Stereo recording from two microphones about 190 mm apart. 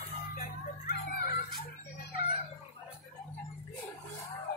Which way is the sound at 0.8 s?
55° left (ahead or behind).